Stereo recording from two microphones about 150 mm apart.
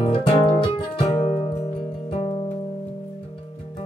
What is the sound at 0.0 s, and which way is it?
Music, 40° left (ahead or behind).